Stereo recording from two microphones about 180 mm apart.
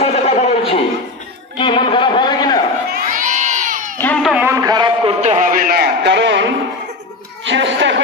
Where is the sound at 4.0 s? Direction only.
10° left (ahead or behind).